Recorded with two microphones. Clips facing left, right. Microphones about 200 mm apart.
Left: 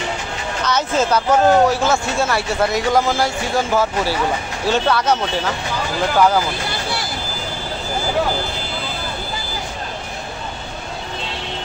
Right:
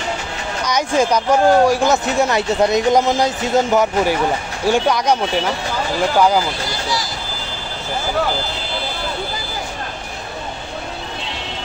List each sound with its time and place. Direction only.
0.7 s speech: 15° right (ahead or behind)